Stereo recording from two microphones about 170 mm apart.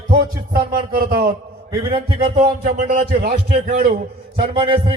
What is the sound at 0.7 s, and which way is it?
Speech, 70° right (ahead or behind).